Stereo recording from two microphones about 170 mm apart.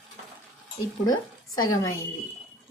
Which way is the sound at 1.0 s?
25° left (ahead or behind).